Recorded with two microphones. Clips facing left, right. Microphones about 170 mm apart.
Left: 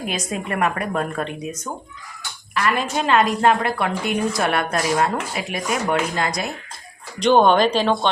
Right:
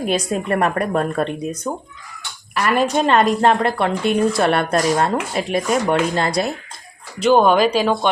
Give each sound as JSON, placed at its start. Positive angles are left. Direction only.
{"t": 0.0, "sound": "a woman's voice", "side_deg": -35}
{"t": 7.2, "sound": "speech", "side_deg": -5}